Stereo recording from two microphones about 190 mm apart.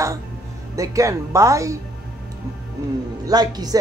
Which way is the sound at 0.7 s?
15° right (ahead or behind).